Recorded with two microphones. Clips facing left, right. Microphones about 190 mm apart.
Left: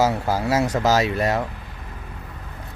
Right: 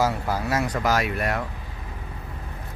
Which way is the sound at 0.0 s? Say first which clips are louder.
Left 4 dB; 25° left (ahead or behind).